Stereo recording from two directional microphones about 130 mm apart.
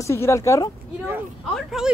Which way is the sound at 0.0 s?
20° left (ahead or behind).